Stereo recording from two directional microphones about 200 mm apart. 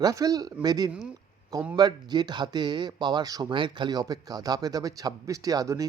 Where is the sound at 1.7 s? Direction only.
20° right (ahead or behind).